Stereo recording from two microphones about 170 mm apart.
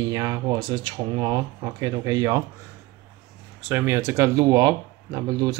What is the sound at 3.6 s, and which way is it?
Speech, 10° right (ahead or behind).